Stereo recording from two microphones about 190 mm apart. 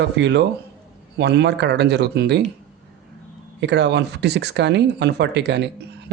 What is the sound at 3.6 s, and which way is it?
Speech, 65° right (ahead or behind).